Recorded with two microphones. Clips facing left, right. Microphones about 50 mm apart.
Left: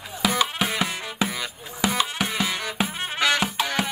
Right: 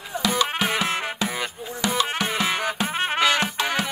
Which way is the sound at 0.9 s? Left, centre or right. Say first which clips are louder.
Right 6 dB; right.